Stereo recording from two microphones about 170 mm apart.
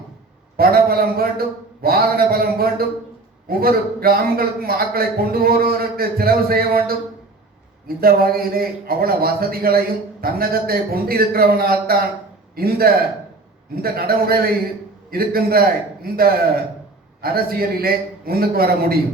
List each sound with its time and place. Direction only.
0.5 s a man's voice: 65° right (ahead or behind)
17.2 s a man's voice: 60° right (ahead or behind)